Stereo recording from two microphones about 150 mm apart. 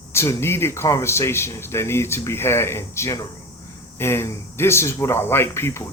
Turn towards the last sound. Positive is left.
turn(degrees=20)  # may be behind; listen again after turning